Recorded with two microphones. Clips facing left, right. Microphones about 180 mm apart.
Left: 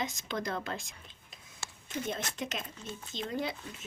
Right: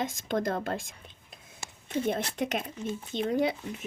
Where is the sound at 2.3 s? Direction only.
60° right (ahead or behind).